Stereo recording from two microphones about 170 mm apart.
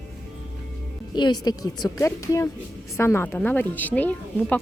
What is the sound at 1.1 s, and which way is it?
A woman's voice, 25° left (ahead or behind).